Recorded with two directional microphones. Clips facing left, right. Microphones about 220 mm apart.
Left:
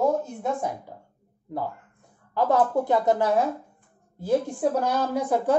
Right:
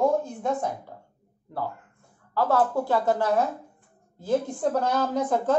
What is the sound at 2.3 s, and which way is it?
Speech, 20° left (ahead or behind).